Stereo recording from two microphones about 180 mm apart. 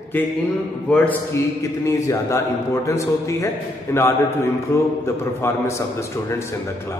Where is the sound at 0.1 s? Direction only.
10° left (ahead or behind).